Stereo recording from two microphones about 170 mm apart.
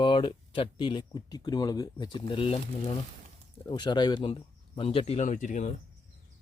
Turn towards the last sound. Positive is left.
turn(degrees=45)  # may be behind; listen again after turning